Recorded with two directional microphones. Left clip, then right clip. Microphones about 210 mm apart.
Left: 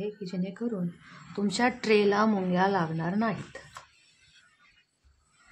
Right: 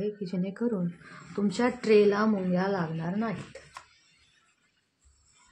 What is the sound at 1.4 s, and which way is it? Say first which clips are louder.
Speech: left 1 dB; centre (ahead or behind).